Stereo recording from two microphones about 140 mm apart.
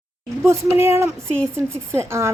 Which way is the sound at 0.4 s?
20° right (ahead or behind).